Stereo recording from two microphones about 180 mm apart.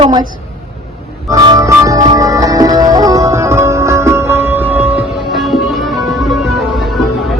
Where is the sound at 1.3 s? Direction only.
20° right (ahead or behind).